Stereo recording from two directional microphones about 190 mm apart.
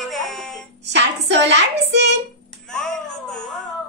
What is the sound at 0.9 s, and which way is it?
Hands, 65° right (ahead or behind).